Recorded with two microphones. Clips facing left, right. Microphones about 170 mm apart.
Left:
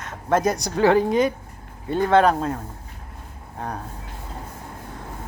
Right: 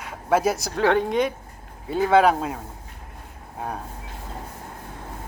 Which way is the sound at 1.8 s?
5° right (ahead or behind).